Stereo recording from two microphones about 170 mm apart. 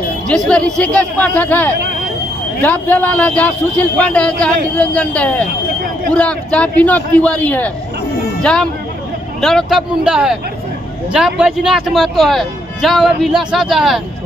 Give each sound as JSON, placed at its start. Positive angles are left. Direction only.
{"t": 0.3, "sound": "a man's voice", "side_deg": 5}